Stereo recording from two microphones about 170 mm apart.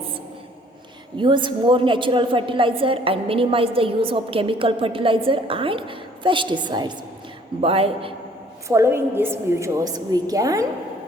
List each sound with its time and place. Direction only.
1.2 s a woman's voice: 30° right (ahead or behind)
8.6 s a woman's voice: 15° right (ahead or behind)